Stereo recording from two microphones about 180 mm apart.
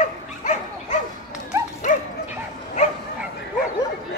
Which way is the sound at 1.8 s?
40° left (ahead or behind).